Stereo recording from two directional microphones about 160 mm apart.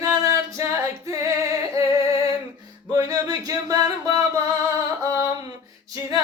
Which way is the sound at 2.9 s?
20° right (ahead or behind).